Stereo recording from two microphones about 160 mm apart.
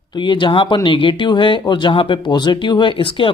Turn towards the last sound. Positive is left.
turn(degrees=30)  # may be behind; listen again after turning